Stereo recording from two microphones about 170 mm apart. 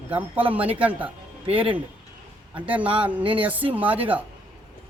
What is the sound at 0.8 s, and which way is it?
Speech, 10° right (ahead or behind).